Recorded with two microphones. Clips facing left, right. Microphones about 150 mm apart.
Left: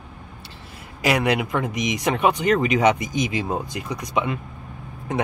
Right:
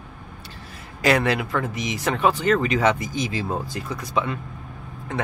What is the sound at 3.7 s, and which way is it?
Speech, 10° left (ahead or behind).